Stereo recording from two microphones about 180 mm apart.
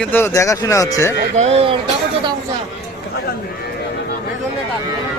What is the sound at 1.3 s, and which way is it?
Speech, 35° right (ahead or behind).